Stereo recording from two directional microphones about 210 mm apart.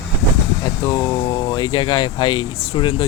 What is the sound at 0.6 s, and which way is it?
Speech, 15° left (ahead or behind).